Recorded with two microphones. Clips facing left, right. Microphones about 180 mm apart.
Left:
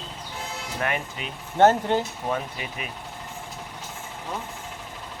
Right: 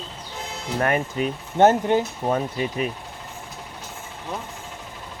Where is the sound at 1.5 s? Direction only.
15° right (ahead or behind).